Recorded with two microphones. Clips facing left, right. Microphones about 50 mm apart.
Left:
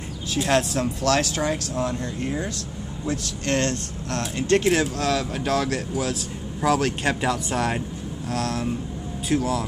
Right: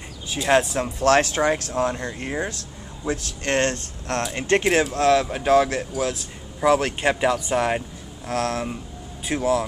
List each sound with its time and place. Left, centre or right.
0.3 s a man's voice: right
1.0 s a man's voice: right
5.3 s a man's voice: centre
8.3 s a man's voice: right